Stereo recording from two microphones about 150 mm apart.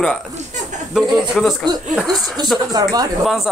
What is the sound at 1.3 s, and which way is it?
A man's voice, centre (ahead or behind).